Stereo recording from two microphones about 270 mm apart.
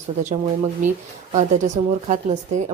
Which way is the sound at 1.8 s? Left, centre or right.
Right.